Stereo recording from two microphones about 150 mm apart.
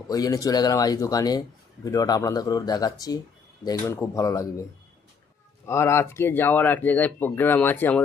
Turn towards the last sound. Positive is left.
turn(degrees=10)  # may be behind; listen again after turning